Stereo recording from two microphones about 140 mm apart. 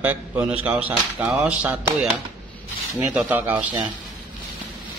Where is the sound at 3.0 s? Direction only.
10° right (ahead or behind).